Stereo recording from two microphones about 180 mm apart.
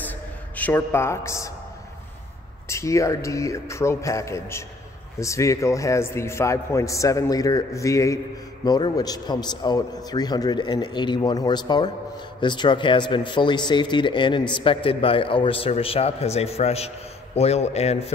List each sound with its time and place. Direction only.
0.6 s a man's voice: 10° left (ahead or behind)
2.7 s a man's voice: 15° left (ahead or behind); by 18.1 s 35° left (ahead or behind)